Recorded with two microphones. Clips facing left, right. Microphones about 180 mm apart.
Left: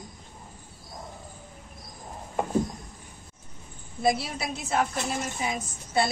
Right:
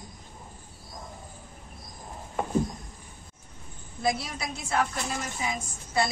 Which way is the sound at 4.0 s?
25° left (ahead or behind).